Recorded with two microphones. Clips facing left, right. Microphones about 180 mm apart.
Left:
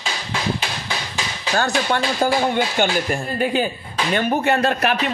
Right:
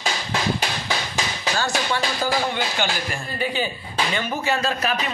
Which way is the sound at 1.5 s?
55° left (ahead or behind).